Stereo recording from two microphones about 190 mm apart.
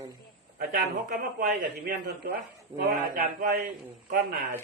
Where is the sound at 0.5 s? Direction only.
50° right (ahead or behind).